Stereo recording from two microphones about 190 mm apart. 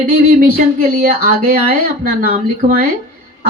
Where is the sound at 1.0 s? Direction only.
50° right (ahead or behind).